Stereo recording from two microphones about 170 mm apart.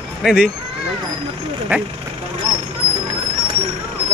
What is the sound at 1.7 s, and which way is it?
Speech, 10° right (ahead or behind).